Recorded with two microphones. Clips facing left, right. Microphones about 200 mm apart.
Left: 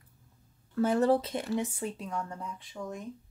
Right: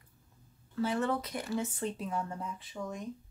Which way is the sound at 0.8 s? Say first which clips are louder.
Left 6 dB; 35° left (ahead or behind).